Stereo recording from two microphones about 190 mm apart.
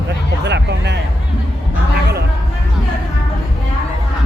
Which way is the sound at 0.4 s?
65° right (ahead or behind).